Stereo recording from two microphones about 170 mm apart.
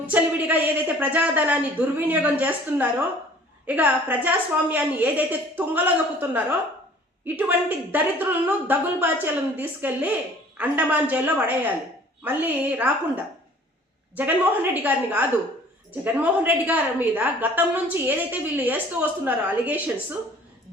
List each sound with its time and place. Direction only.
0.1 s a woman's voice: 10° right (ahead or behind)